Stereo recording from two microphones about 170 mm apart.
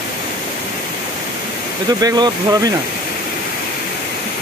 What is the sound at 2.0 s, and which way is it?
Speech, 25° right (ahead or behind).